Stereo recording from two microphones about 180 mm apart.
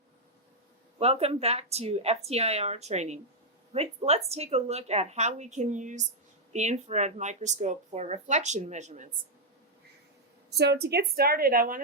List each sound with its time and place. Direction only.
0.9 s speech: 35° right (ahead or behind)
10.5 s a woman's voice: 65° right (ahead or behind)